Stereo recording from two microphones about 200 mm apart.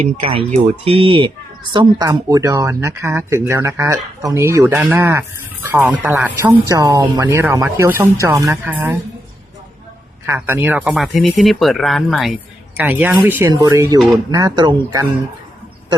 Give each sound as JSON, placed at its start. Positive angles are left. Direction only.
{"t": 0.2, "sound": "speech", "side_deg": -25}
{"t": 10.2, "sound": "speech", "side_deg": -10}